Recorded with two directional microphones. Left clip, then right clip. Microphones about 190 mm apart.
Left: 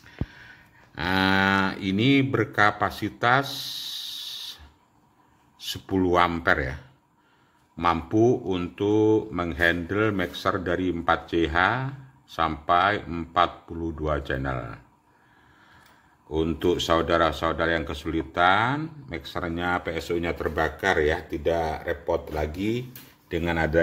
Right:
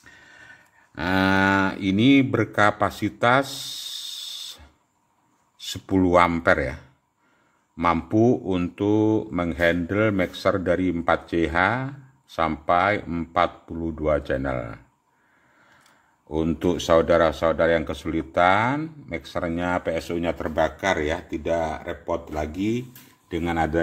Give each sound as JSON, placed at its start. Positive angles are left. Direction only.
{"t": 0.3, "sound": "a sound", "side_deg": -50}
{"t": 5.6, "sound": "speech", "side_deg": -50}
{"t": 16.3, "sound": "speech", "side_deg": -45}